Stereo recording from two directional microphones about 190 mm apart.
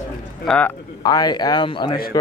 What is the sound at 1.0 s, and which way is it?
Speech, 20° left (ahead or behind).